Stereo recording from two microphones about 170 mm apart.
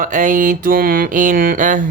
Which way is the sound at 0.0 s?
50° right (ahead or behind).